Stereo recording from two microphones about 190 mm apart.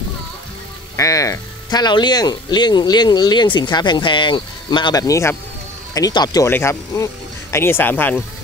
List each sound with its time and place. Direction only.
0.9 s speech: 15° left (ahead or behind)